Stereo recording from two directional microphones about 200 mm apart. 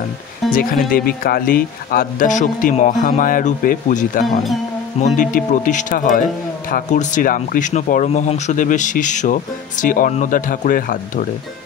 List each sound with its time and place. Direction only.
0.5 s speech: 45° left (ahead or behind)